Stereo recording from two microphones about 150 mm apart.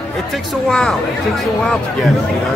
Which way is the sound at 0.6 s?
5° left (ahead or behind).